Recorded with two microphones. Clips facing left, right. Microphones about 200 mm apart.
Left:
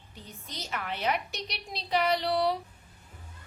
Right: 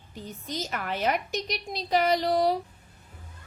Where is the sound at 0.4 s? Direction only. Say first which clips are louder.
Right 4 dB; 45° right (ahead or behind).